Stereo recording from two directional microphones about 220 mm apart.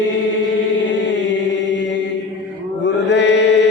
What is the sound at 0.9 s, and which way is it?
Chant, 55° left (ahead or behind).